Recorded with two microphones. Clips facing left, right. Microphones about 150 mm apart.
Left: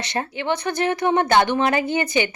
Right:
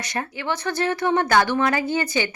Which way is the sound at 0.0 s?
25° left (ahead or behind).